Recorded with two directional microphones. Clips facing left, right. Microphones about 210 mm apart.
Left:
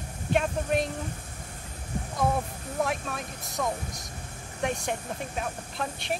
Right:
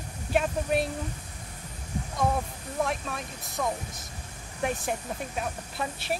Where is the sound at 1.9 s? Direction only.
50° left (ahead or behind).